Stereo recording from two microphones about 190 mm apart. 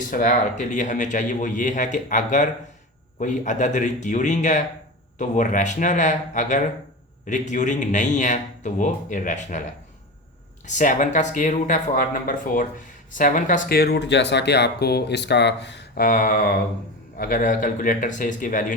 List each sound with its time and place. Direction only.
0.1 s speech: 45° left (ahead or behind)
10.7 s speech: 40° left (ahead or behind); by 16.0 s 65° left (ahead or behind)
16.0 s speech: 45° left (ahead or behind)